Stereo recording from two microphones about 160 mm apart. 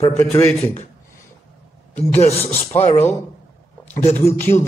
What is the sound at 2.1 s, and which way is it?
Speech, 40° left (ahead or behind).